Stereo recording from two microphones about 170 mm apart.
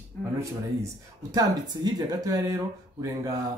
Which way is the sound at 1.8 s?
25° right (ahead or behind).